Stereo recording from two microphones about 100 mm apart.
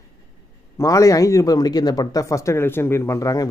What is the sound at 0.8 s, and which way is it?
Speech, 35° left (ahead or behind).